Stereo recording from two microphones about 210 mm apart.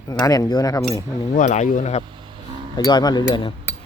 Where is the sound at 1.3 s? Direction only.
35° left (ahead or behind).